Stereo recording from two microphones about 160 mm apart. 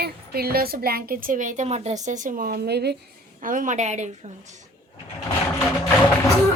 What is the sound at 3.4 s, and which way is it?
Speech, 55° right (ahead or behind).